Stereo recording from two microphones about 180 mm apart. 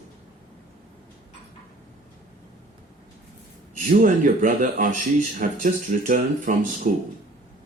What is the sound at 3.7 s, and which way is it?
Speech, 50° right (ahead or behind).